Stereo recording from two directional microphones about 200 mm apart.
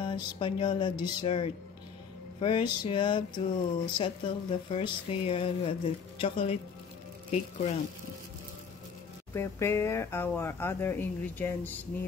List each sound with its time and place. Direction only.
0.0 s a sound: 25° left (ahead or behind)
7.2 s speech: 35° left (ahead or behind)
9.3 s speech: 15° left (ahead or behind)